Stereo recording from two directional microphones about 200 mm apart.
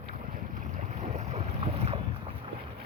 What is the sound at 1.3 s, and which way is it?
Boat, 30° right (ahead or behind).